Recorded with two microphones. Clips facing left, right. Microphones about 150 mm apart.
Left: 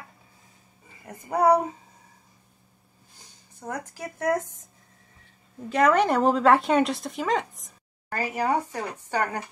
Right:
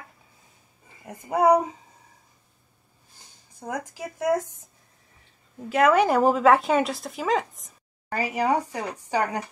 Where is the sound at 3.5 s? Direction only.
15° right (ahead or behind).